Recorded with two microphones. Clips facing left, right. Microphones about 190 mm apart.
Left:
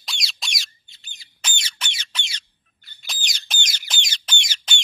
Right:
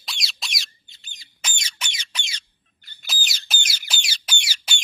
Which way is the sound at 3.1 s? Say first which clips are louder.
Right 1 dB; 5° right (ahead or behind).